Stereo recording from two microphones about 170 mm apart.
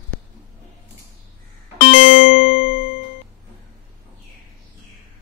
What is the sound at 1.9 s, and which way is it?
Music, 50° left (ahead or behind).